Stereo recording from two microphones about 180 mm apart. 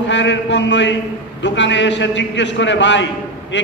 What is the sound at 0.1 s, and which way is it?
A man's voice, 85° left.